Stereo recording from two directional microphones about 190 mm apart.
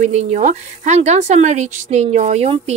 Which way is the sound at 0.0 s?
35° right (ahead or behind).